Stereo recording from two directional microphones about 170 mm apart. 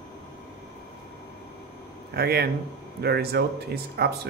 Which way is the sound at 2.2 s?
65° right (ahead or behind).